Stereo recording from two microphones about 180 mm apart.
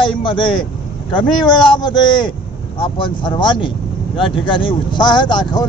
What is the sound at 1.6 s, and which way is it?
Speech, 25° left (ahead or behind).